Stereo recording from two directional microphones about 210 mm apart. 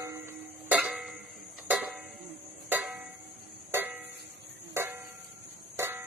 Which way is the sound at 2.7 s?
10° right (ahead or behind).